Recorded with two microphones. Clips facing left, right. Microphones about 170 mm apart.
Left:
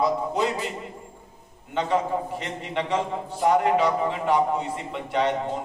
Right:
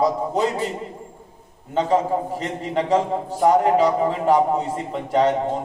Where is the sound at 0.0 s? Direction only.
40° right (ahead or behind).